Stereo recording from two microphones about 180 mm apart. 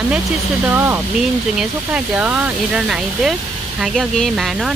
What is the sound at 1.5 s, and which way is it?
Speech, 5° right (ahead or behind).